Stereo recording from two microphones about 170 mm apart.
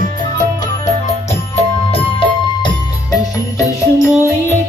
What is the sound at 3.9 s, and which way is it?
Music, 15° left (ahead or behind).